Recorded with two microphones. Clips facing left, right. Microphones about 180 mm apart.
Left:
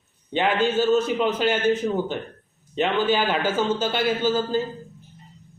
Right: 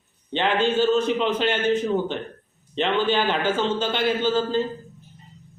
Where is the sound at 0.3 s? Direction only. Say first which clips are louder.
Even; 10° left (ahead or behind).